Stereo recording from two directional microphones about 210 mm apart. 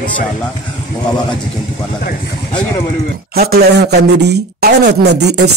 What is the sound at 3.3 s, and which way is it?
Speech, 45° right (ahead or behind).